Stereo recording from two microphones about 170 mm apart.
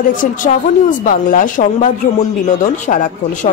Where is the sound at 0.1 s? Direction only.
50° left (ahead or behind).